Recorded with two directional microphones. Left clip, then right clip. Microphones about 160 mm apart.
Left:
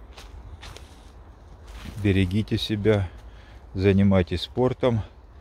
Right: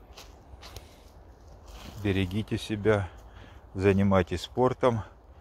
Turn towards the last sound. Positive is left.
turn(degrees=15)  # may be behind; listen again after turning